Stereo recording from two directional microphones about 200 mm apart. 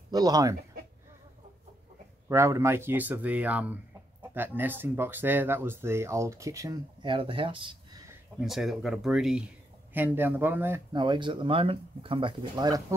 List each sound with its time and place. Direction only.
0.1 s speech: 20° right (ahead or behind)
2.2 s speech: 15° right (ahead or behind)
8.4 s speech: centre (ahead or behind)
10.9 s speech: 20° right (ahead or behind)